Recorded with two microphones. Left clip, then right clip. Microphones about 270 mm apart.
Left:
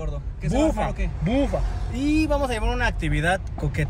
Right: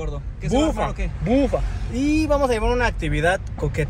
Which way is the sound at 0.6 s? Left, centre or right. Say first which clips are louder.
Right 1 dB; centre.